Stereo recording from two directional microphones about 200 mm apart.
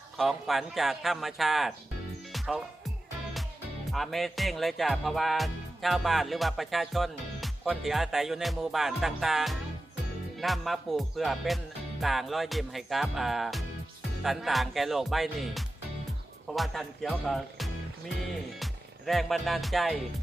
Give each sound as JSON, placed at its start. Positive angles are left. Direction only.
{"t": 0.2, "sound": "music", "side_deg": 0}
{"t": 3.9, "sound": "music", "side_deg": 0}